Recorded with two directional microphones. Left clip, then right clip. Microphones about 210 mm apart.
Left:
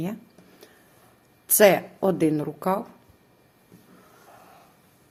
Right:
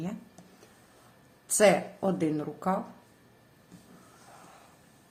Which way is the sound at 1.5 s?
45° left (ahead or behind).